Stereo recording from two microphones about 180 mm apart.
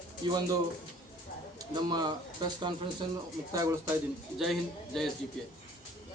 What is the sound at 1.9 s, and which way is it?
A man's voice, 25° right (ahead or behind).